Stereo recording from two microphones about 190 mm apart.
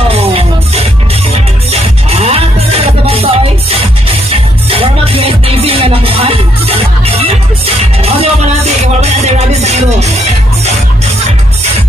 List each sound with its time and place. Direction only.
0.1 s music: 30° right (ahead or behind)